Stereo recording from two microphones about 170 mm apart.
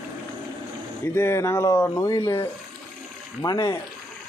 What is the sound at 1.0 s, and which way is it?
Speech, 15° left (ahead or behind).